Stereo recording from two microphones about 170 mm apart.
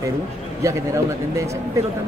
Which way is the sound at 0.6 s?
15° right (ahead or behind).